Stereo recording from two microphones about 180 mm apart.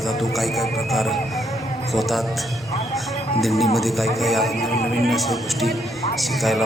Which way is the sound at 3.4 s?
Centre (ahead or behind).